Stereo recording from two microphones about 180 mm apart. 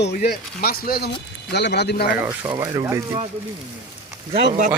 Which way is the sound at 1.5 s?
70° left (ahead or behind).